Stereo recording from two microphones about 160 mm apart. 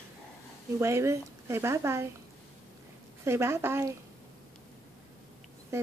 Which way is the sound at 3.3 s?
15° right (ahead or behind).